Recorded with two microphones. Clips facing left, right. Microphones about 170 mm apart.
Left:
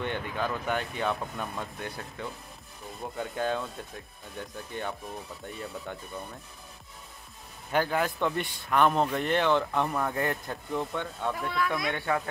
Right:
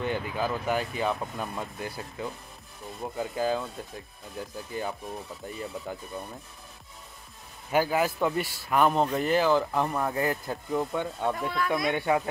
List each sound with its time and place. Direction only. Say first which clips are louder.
0.0 s speech: right 2 dB; 5° right (ahead or behind)
7.7 s a man's voice: right 2 dB; 5° right (ahead or behind)
11.5 s speech: right 2 dB; centre (ahead or behind)
11.9 s a man's voice: right 4 dB; 15° right (ahead or behind)